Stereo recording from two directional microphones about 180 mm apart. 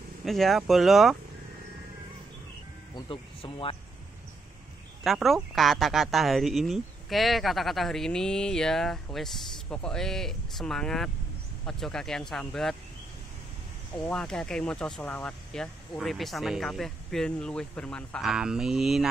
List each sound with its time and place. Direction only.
0.2 s speech: centre (ahead or behind)
3.1 s speech: 30° left (ahead or behind)
5.0 s speech: centre (ahead or behind)
13.9 s speech: 5° left (ahead or behind)